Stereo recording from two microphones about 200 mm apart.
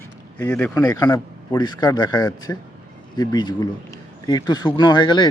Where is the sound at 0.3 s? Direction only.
10° left (ahead or behind).